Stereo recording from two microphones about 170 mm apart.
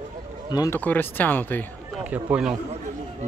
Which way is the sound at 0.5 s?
20° left (ahead or behind).